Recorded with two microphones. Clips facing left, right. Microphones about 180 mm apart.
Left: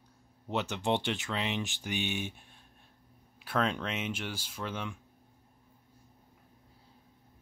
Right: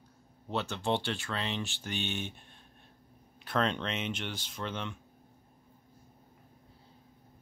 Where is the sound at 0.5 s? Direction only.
15° left (ahead or behind).